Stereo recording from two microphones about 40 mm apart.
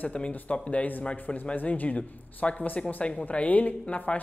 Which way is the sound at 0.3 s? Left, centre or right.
Left.